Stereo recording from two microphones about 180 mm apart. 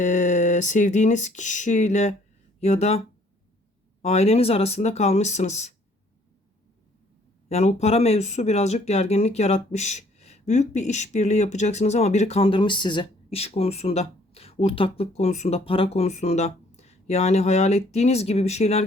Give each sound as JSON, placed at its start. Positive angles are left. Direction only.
{"t": 0.0, "sound": "speech", "side_deg": 45}
{"t": 4.0, "sound": "speech", "side_deg": 35}
{"t": 7.4, "sound": "speech", "side_deg": 35}